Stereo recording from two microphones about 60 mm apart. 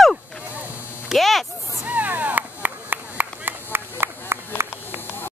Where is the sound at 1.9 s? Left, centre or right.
Right.